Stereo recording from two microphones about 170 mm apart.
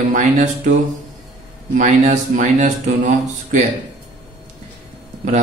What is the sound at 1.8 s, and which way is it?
A man's voice, 45° right (ahead or behind).